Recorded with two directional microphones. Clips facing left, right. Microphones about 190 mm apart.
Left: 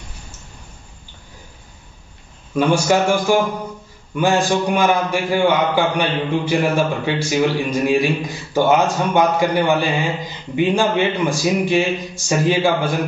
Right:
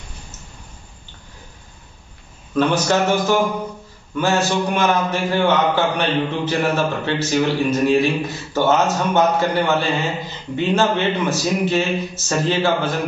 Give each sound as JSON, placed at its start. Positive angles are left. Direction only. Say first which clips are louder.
{"t": 2.5, "sound": "a man's voice", "louder": "left 2 dB", "side_deg": 10}